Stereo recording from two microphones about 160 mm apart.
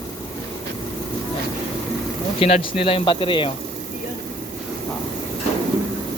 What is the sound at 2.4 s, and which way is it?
Speech, 35° left (ahead or behind).